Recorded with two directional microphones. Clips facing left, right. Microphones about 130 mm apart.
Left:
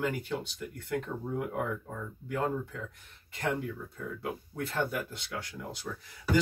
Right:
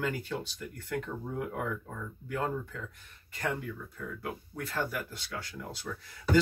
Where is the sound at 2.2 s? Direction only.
20° left (ahead or behind).